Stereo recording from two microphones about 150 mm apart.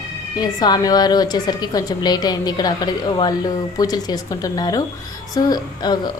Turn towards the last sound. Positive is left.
turn(degrees=30)  # may be behind; listen again after turning